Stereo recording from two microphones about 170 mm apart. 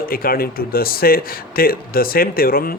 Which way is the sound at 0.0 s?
60° left (ahead or behind).